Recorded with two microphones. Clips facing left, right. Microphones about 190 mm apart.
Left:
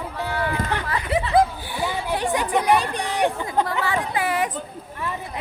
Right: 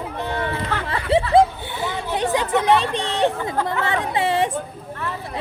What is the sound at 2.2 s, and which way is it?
Chatter, 20° right (ahead or behind).